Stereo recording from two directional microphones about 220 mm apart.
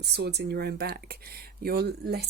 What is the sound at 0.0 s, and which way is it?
A woman's voice, 50° right (ahead or behind).